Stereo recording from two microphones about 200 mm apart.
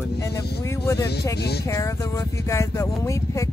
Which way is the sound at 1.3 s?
55° left (ahead or behind).